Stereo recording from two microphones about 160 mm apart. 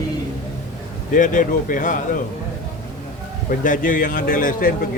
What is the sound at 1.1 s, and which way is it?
Speech, 55° left (ahead or behind).